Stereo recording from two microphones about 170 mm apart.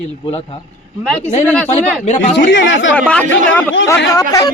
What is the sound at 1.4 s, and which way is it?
Speech, 10° left (ahead or behind).